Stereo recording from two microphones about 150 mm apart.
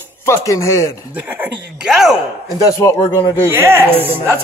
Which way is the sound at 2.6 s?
20° left (ahead or behind).